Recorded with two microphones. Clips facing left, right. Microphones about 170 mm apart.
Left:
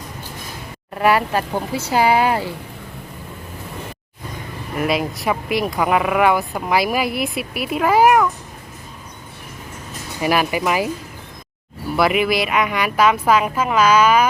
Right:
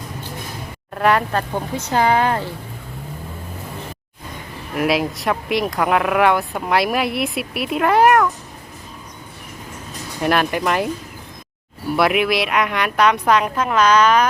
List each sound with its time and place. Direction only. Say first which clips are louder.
0.9 s speech: left 1 dB; 5° left (ahead or behind)
4.7 s speech: right 2 dB; centre (ahead or behind)
10.2 s speech: even; 5° left (ahead or behind)
11.9 s speech: even; centre (ahead or behind)